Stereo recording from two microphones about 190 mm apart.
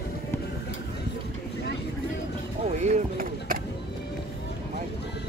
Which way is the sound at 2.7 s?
35° right (ahead or behind).